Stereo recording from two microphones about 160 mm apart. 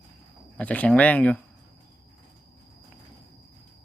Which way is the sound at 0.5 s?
10° left (ahead or behind).